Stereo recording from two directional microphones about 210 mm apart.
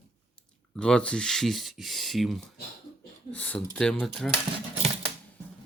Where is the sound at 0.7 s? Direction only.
5° left (ahead or behind).